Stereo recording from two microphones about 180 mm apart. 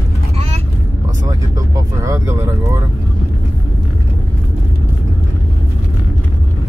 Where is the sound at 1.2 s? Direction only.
20° right (ahead or behind).